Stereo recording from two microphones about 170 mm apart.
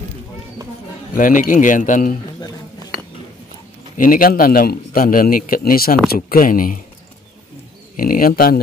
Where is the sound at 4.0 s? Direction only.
55° left (ahead or behind).